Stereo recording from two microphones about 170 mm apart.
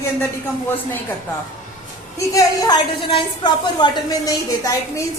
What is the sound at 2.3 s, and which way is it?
A woman's voice, 25° left (ahead or behind).